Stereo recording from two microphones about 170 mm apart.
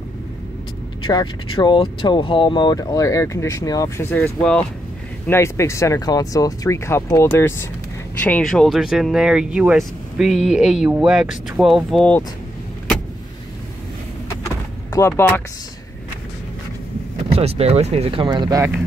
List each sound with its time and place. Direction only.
1.0 s speech: 30° left (ahead or behind); by 12.2 s 5° left (ahead or behind)
14.9 s speech: 15° left (ahead or behind)
17.3 s speech: 35° right (ahead or behind)